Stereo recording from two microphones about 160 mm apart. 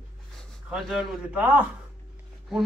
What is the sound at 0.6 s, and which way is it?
Speech, 5° right (ahead or behind).